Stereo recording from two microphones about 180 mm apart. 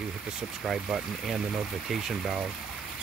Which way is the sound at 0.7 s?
Centre (ahead or behind).